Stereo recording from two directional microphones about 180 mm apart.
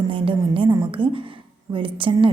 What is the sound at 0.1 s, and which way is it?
A woman's voice, 30° right (ahead or behind).